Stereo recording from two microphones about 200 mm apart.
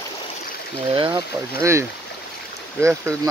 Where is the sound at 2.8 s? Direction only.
15° right (ahead or behind).